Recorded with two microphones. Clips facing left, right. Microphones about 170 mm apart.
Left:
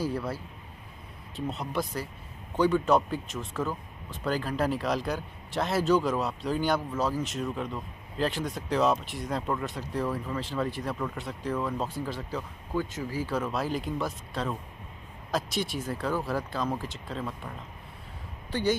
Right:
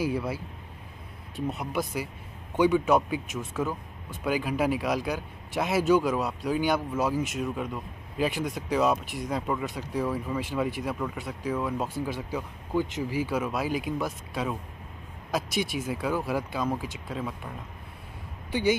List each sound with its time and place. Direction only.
0.0 s speech: 10° right (ahead or behind)